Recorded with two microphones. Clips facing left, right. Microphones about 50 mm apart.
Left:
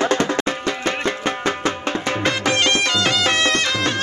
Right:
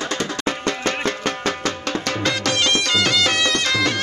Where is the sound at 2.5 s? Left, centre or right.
Left.